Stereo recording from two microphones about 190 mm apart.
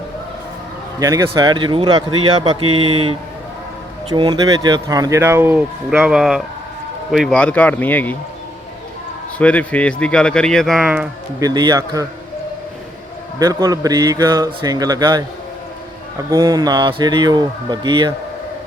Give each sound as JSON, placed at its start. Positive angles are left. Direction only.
{"t": 0.9, "sound": "a man's voice", "side_deg": -20}
{"t": 9.4, "sound": "speech", "side_deg": 5}
{"t": 11.3, "sound": "a man's voice", "side_deg": -20}
{"t": 13.4, "sound": "a man's voice", "side_deg": -20}
{"t": 16.3, "sound": "a man's voice", "side_deg": -20}